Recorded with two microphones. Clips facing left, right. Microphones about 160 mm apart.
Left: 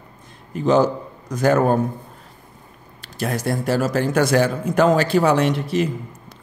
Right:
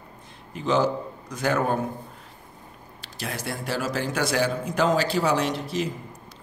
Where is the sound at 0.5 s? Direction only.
45° left (ahead or behind).